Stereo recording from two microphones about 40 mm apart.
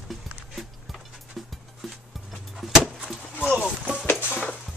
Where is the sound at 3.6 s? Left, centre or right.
Right.